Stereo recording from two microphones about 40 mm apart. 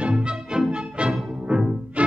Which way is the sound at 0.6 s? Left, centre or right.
Right.